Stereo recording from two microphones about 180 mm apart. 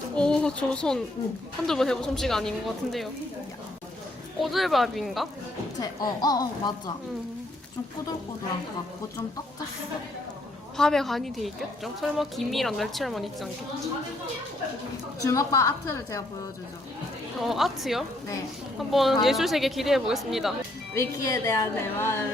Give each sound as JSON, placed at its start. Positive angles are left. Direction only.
{"t": 0.2, "sound": "a woman's voice", "side_deg": 5}
{"t": 4.4, "sound": "a woman's voice", "side_deg": 0}
{"t": 5.8, "sound": "a woman's voice", "side_deg": 20}
{"t": 10.8, "sound": "a woman's voice", "side_deg": 0}
{"t": 15.2, "sound": "a woman's voice", "side_deg": 20}
{"t": 17.4, "sound": "a woman's voice", "side_deg": 0}
{"t": 20.9, "sound": "a woman's voice", "side_deg": 15}